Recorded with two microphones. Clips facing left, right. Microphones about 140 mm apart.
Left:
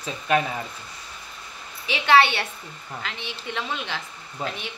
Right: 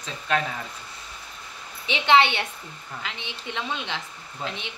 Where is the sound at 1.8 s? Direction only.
20° right (ahead or behind).